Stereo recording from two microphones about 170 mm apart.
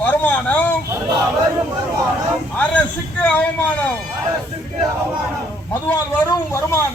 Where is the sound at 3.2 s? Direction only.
5° left (ahead or behind).